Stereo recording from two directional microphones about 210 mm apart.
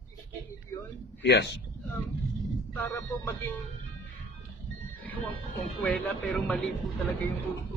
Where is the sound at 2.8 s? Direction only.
10° left (ahead or behind).